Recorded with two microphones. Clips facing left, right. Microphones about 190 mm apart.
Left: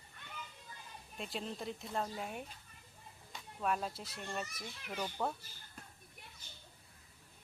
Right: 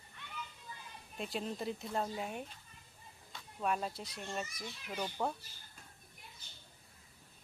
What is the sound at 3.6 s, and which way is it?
Speech, centre (ahead or behind).